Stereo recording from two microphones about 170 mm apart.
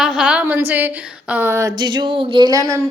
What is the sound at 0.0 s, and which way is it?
A woman's voice, 5° right (ahead or behind).